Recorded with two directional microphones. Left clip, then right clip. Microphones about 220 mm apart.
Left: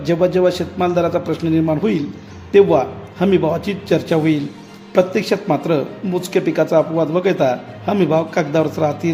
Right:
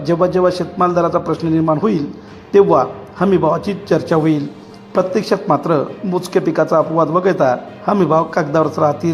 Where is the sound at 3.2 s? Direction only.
15° left (ahead or behind).